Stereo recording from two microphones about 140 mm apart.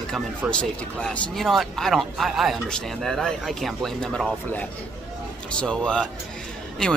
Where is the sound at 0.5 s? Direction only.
5° left (ahead or behind).